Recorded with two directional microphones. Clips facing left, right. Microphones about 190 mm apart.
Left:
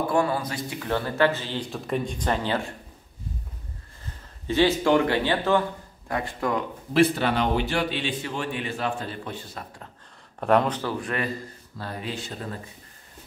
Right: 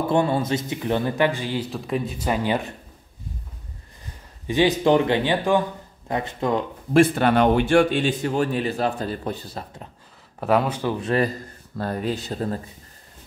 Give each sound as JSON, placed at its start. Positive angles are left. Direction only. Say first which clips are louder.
{"t": 0.0, "sound": "speech", "louder": "right 3 dB", "side_deg": -25}
{"t": 4.5, "sound": "speech", "louder": "right 2 dB", "side_deg": -15}
{"t": 6.9, "sound": "a man's voice", "louder": "right 4 dB", "side_deg": -50}
{"t": 10.4, "sound": "speech", "louder": "right 1 dB", "side_deg": -5}
{"t": 11.8, "sound": "a man's voice", "louder": "right 7 dB", "side_deg": -45}